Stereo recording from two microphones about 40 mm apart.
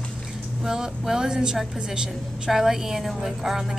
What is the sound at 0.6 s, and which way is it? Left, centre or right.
A woman's voice, centre.